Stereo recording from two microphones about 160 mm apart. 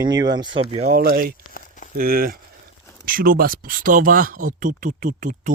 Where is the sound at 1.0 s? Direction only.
70° right (ahead or behind).